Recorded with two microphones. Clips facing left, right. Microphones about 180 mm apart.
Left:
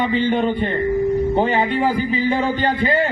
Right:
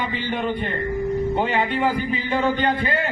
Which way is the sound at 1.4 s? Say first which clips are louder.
Left 4 dB; 35° left (ahead or behind).